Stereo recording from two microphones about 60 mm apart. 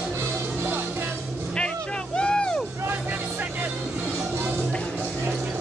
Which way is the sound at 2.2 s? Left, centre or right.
Centre.